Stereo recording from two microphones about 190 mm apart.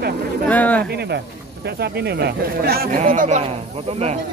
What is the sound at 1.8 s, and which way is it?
Speech, 60° right (ahead or behind).